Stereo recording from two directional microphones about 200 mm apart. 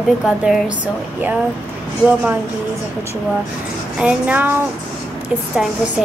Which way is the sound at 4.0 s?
5° right (ahead or behind).